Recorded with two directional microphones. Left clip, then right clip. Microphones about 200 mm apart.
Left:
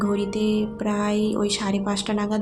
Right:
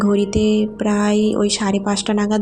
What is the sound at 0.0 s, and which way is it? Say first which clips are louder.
Speech: right 7 dB; 25° right (ahead or behind).